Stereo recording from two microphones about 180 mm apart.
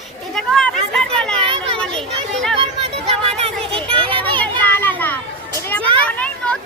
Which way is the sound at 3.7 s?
30° right (ahead or behind).